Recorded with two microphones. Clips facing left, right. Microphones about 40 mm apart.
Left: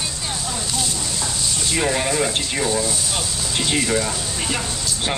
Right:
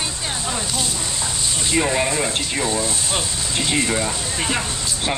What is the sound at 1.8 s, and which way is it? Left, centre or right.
Speech, centre.